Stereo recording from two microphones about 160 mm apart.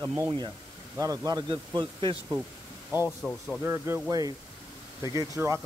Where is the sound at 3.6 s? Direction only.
15° right (ahead or behind).